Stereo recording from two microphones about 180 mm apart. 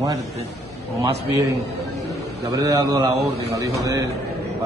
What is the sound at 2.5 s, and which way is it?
A man's voice, 20° right (ahead or behind).